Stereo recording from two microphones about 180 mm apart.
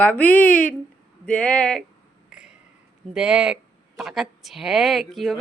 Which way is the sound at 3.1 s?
5° right (ahead or behind).